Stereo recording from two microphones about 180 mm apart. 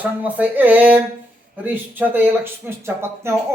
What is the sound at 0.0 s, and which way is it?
Speech, 10° right (ahead or behind).